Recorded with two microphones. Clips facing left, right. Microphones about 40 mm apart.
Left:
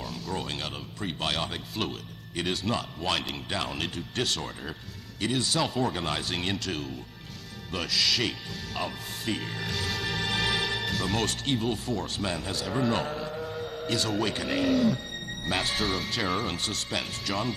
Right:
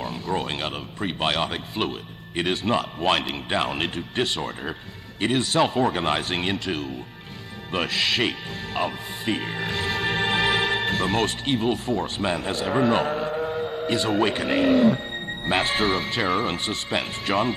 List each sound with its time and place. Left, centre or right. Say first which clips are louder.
0.0 s a sound: right 7 dB; right
0.5 s speech: right 6 dB; right
1.5 s speech: right 5 dB; centre
2.3 s speech: right 6 dB; right
8.7 s speech: right 7 dB; centre
10.3 s music: right 5 dB; right
11.9 s speech: right 6 dB; right
12.6 s speech: right 7 dB; right
13.1 s chant: right 8 dB; right
14.4 s music: right 6 dB; right
15.6 s speech: right 6 dB; right